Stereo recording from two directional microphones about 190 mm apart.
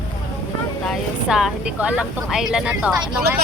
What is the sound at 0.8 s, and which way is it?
Speech, centre (ahead or behind).